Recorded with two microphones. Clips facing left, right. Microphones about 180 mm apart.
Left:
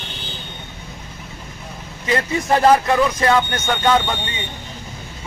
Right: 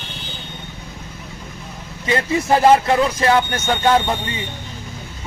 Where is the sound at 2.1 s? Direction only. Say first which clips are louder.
Right 1 dB; 30° right (ahead or behind).